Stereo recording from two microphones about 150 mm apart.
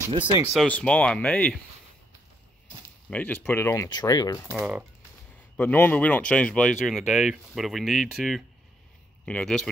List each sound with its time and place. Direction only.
0.5 s speech: 5° left (ahead or behind)
3.1 s speech: 10° left (ahead or behind)
4.5 s speech: 10° right (ahead or behind)
5.6 s speech: 10° left (ahead or behind)